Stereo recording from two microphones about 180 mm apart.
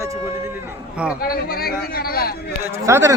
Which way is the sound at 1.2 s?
60° left (ahead or behind).